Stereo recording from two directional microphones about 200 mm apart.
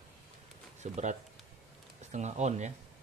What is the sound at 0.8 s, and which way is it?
Speech, 35° right (ahead or behind).